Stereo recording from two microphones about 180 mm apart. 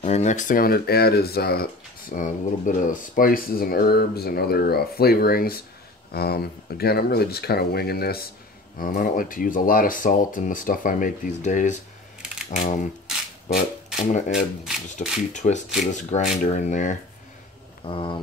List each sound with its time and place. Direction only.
0.0 s speech: 40° left (ahead or behind); by 8.2 s 60° left (ahead or behind)
8.8 s speech: 50° left (ahead or behind)
13.9 s speech: 45° left (ahead or behind)
15.3 s a sound: 40° left (ahead or behind)
15.8 s speech: 40° left (ahead or behind)
17.8 s a sound: 30° left (ahead or behind)